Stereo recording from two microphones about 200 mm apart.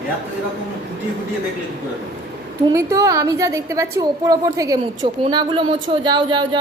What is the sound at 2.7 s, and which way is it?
A woman's voice, 15° right (ahead or behind).